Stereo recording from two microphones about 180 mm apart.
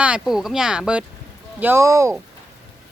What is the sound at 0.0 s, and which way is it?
Speech, 5° right (ahead or behind).